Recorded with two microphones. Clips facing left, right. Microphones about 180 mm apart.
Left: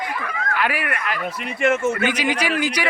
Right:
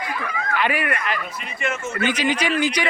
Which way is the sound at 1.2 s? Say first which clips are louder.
Left 7 dB; 65° left (ahead or behind).